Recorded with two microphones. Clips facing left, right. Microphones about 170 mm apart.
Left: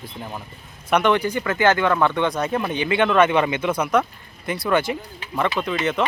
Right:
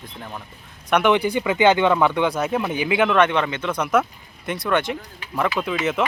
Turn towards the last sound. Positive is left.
turn(degrees=-5)  # may be behind; listen again after turning